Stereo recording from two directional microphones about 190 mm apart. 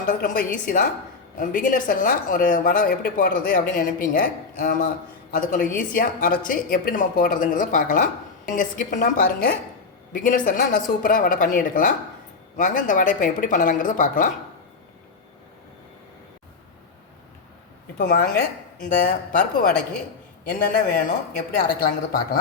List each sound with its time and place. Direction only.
0.1 s speech: 45° left (ahead or behind)
18.0 s speech: 50° left (ahead or behind)